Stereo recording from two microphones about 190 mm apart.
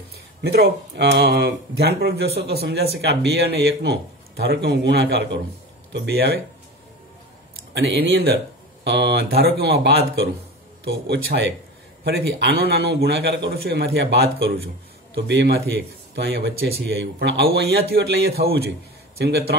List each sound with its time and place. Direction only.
0.4 s speech: 60° right (ahead or behind)
7.7 s a man's voice: 60° right (ahead or behind)